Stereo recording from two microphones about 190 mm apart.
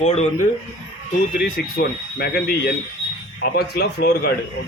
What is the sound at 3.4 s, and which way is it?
Speech, 55° left (ahead or behind).